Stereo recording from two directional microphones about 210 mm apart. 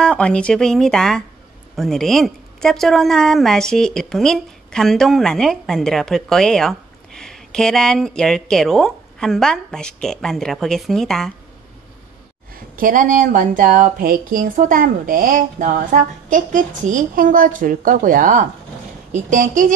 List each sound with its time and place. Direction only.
0.0 s a woman's voice: 5° left (ahead or behind)
12.7 s speech: 40° right (ahead or behind)